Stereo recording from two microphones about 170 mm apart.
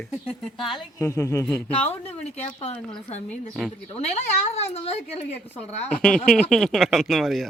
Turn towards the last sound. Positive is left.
turn(degrees=0)  # may be behind; listen again after turning